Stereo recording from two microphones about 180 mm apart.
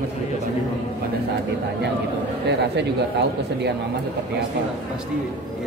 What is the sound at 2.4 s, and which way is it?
Speech, 70° right (ahead or behind).